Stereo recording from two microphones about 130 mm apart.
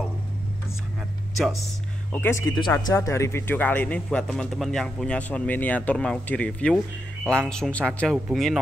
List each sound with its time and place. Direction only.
2.1 s speech: 20° left (ahead or behind); by 8.5 s centre (ahead or behind)